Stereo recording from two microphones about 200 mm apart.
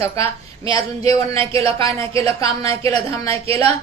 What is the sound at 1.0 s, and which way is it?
Speech, 30° right (ahead or behind).